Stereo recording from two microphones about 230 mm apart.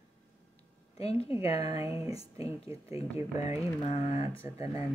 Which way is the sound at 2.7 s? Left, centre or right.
Centre.